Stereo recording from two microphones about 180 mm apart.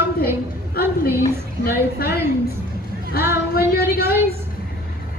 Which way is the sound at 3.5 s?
60° left (ahead or behind).